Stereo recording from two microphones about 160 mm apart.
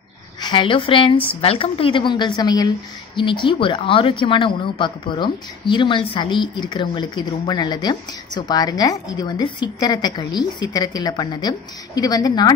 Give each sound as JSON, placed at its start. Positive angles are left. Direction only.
{"t": 0.4, "sound": "a woman's voice", "side_deg": 30}